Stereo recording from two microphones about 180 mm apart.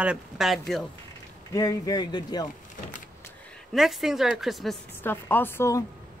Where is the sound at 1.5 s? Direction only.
20° left (ahead or behind).